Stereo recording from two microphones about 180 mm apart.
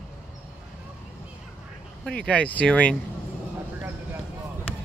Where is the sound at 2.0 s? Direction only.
5° left (ahead or behind).